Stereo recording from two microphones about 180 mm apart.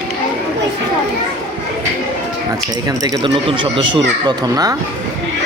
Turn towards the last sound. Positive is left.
turn(degrees=-25)  # may be behind; listen again after turning